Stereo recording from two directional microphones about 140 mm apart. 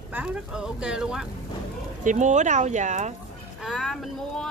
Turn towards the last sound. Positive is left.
turn(degrees=5)  # may be behind; listen again after turning